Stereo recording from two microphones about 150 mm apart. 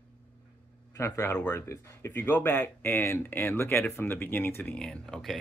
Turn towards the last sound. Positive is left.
turn(degrees=0)  # may be behind; listen again after turning